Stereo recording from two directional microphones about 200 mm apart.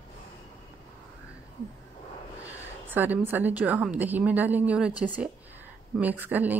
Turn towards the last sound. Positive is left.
turn(degrees=-10)  # may be behind; listen again after turning